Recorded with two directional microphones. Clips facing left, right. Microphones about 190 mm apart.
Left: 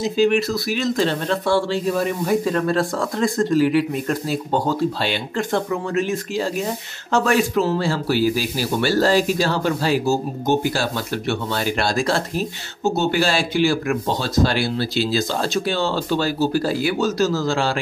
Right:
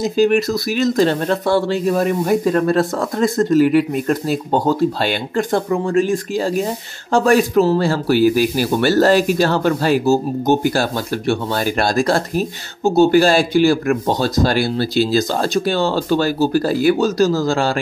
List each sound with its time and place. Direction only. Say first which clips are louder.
0.2 s speech: right 3 dB; 40° right (ahead or behind)
1.7 s speech: right 4 dB; 50° right (ahead or behind)
5.7 s speech: right 6 dB; 35° right (ahead or behind)
8.4 s speech: right 6 dB; 55° right (ahead or behind)
10.4 s speech: right 4 dB; 40° right (ahead or behind)
13.2 s speech: right 6 dB; 45° right (ahead or behind)